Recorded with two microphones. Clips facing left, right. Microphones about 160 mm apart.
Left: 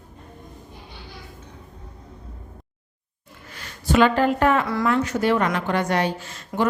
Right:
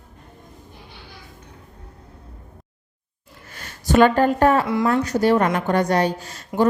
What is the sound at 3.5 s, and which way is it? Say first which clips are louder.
Speech: right 2 dB; 45° right (ahead or behind).